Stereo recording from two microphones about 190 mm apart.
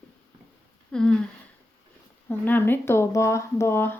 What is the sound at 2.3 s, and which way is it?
Speech, 10° left (ahead or behind).